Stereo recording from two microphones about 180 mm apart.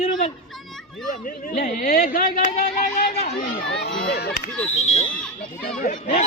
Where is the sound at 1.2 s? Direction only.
45° left (ahead or behind).